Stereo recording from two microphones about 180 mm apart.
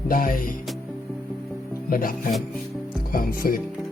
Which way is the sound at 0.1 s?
50° left (ahead or behind).